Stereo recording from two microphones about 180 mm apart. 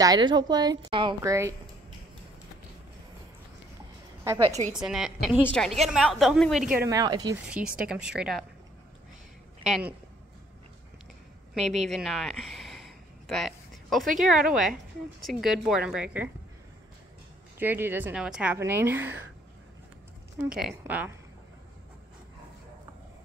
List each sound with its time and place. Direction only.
0.0 s a woman's voice: 20° right (ahead or behind)
4.5 s a woman's voice: 40° right (ahead or behind)
4.7 s a woman's voice: 5° right (ahead or behind)
6.9 s a woman's voice: 20° right (ahead or behind)
7.4 s a woman's voice: 5° right (ahead or behind)
9.7 s a woman's voice: 5° right (ahead or behind)
11.6 s a woman's voice: 40° right (ahead or behind)
11.9 s a sound: centre (ahead or behind)
14.2 s a woman's voice: centre (ahead or behind)
17.6 s a woman's voice: 10° right (ahead or behind)
20.5 s a woman's voice: 5° right (ahead or behind)